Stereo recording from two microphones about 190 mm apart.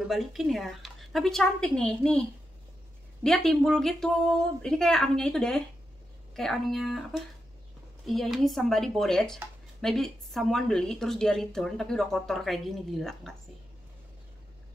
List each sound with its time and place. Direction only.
0.1 s speech: centre (ahead or behind)
3.3 s speech: 5° left (ahead or behind)